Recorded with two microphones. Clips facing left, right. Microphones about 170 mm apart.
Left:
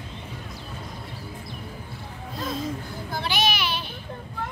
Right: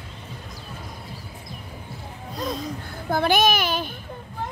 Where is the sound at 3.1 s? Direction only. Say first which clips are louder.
Right 7 dB; 50° right (ahead or behind).